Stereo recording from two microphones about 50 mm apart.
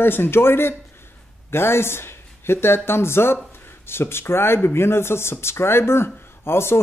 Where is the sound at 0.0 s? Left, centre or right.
Left.